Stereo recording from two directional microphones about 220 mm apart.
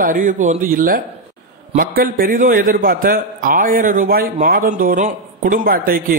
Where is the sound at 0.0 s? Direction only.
35° right (ahead or behind).